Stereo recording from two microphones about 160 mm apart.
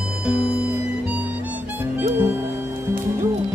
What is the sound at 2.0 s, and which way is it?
Music, 15° right (ahead or behind).